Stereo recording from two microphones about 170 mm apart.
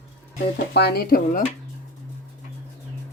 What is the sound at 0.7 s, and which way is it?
Speech, 70° left (ahead or behind).